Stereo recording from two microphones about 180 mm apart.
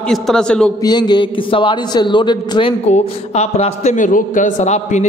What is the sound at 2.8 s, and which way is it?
A man's voice, 35° left (ahead or behind).